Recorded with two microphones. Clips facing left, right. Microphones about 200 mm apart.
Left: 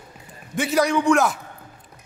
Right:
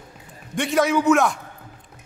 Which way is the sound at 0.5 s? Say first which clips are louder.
Even; centre (ahead or behind).